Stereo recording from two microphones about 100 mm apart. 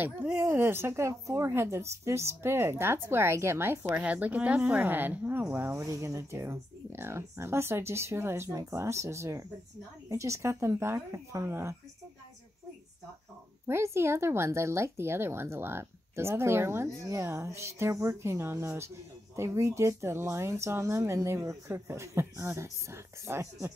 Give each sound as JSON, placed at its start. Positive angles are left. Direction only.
{"t": 0.0, "sound": "speech", "side_deg": -20}
{"t": 3.9, "sound": "a woman's voice", "side_deg": -15}
{"t": 13.7, "sound": "speech", "side_deg": -25}